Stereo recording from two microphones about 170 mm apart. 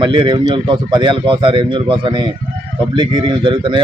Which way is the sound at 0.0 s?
25° right (ahead or behind).